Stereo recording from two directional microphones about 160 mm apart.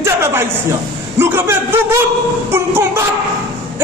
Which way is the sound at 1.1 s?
15° right (ahead or behind).